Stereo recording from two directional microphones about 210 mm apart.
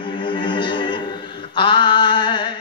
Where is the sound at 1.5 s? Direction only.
25° left (ahead or behind).